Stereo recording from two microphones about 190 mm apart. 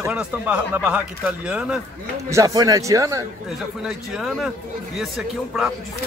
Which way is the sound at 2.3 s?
20° right (ahead or behind).